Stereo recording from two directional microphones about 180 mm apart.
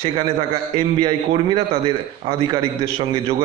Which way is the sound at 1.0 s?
30° right (ahead or behind).